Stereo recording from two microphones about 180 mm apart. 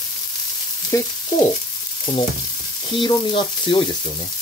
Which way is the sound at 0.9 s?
15° left (ahead or behind).